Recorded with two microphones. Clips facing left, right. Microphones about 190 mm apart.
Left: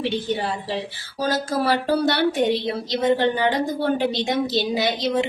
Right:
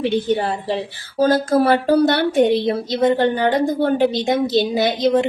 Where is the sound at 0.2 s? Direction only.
50° right (ahead or behind).